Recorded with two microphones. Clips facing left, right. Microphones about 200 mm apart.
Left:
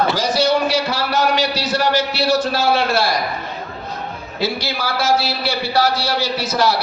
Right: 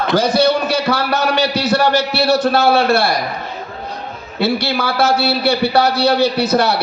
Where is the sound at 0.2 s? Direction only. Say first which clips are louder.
Right 3 dB; 60° right (ahead or behind).